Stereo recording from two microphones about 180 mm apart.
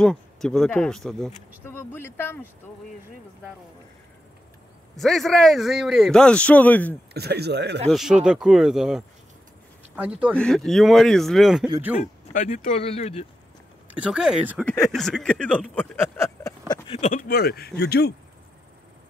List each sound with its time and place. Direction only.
0.0 s a man's voice: 5° left (ahead or behind)
4.9 s a man's voice: centre (ahead or behind)
7.2 s speech: 65° right (ahead or behind)
7.9 s a man's voice: 5° right (ahead or behind)
10.3 s a man's voice: 5° left (ahead or behind)
12.0 s speech: 45° left (ahead or behind)
13.9 s a man's voice: 5° right (ahead or behind); by 17.1 s 30° left (ahead or behind)
17.1 s speech: 50° left (ahead or behind)